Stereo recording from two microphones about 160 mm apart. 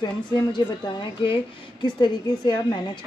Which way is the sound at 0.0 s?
30° left (ahead or behind).